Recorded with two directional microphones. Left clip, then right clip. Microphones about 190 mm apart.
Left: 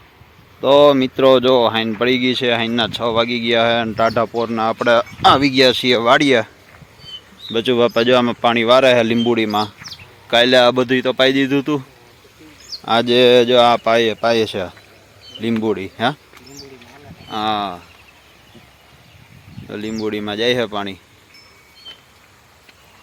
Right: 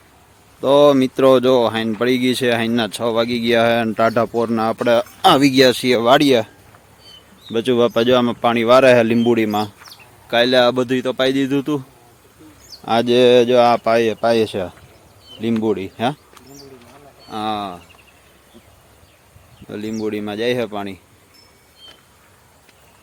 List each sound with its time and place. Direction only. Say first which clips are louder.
0.6 s speech: left 1 dB; 20° right (ahead or behind)
7.5 s speech: left 1 dB; 20° right (ahead or behind)
10.2 s speech: left 2 dB; centre (ahead or behind)
12.8 s speech: left 1 dB; 15° right (ahead or behind)
17.2 s speech: left 3 dB; 10° right (ahead or behind)
19.6 s speech: left 1 dB; 15° right (ahead or behind)